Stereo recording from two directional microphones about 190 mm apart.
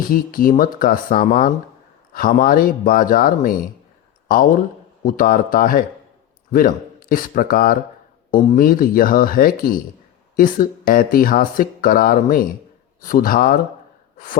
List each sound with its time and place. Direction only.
0.0 s speech: 50° left (ahead or behind)
5.0 s speech: 45° left (ahead or behind)